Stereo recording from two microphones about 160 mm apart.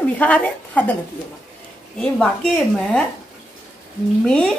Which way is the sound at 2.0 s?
5° left (ahead or behind).